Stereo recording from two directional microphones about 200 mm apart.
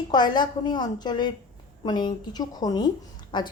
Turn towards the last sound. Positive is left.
turn(degrees=20)  # may be behind; listen again after turning